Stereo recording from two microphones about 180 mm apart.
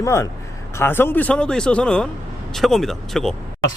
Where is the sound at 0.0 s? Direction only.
15° left (ahead or behind).